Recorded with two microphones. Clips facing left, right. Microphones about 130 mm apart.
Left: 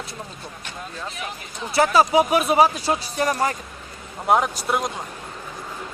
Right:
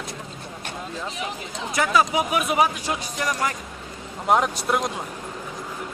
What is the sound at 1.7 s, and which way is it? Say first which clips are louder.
Speech: left 4 dB; 35° left (ahead or behind).